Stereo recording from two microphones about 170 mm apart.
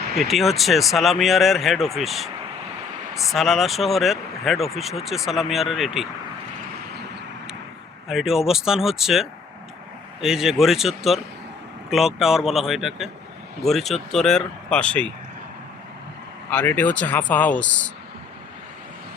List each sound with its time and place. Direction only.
0.2 s speech: centre (ahead or behind)
6.9 s vehicle: 75° right (ahead or behind)
8.0 s speech: 5° right (ahead or behind)
16.5 s speech: 10° left (ahead or behind)